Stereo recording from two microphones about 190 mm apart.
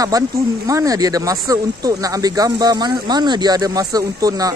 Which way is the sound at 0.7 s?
15° right (ahead or behind).